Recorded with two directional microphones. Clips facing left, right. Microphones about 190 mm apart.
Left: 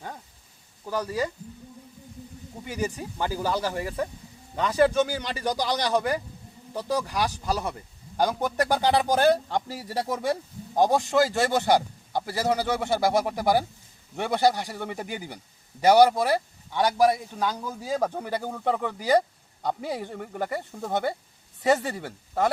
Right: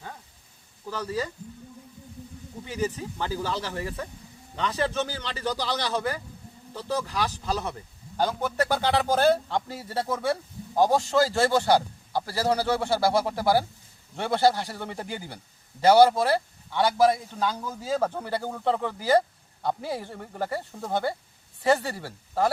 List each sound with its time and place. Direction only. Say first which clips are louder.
0.9 s speech: left 3 dB; 15° left (ahead or behind)
2.6 s a man's voice: right 1 dB; 10° left (ahead or behind)